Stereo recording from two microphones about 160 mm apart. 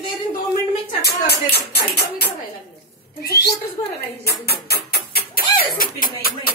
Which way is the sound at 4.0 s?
85° left.